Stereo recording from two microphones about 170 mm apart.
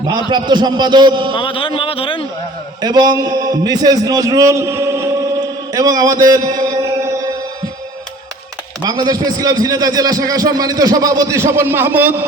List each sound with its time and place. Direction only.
0.3 s a man's voice: 25° right (ahead or behind)
1.4 s a man's voice: 30° left (ahead or behind)
2.8 s a man's voice: 25° right (ahead or behind)
6.2 s mantra: 25° right (ahead or behind)
8.8 s a man's voice: 25° right (ahead or behind)